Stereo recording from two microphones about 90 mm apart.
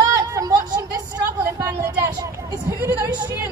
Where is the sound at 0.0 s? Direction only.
40° right (ahead or behind).